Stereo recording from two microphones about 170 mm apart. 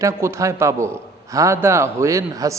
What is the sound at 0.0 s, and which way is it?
A man's voice, 15° right (ahead or behind).